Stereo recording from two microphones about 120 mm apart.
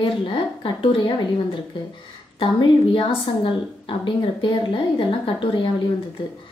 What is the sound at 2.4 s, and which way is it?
A woman's voice, 45° left (ahead or behind).